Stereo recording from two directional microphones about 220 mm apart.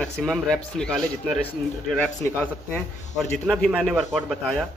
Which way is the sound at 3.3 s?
5° left (ahead or behind).